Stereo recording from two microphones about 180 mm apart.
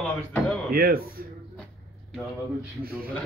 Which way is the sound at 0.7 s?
55° right (ahead or behind).